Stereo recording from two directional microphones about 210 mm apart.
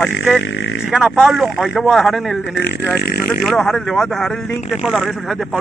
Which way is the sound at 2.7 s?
50° left (ahead or behind).